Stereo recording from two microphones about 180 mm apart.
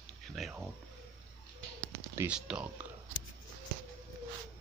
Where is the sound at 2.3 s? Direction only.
5° right (ahead or behind).